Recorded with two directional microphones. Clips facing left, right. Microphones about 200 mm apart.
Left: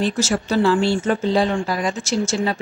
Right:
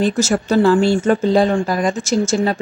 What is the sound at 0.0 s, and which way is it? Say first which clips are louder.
A woman's voice: right 4 dB; 45° right (ahead or behind).